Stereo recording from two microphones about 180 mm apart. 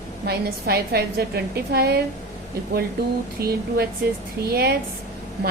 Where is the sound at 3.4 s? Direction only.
60° right (ahead or behind).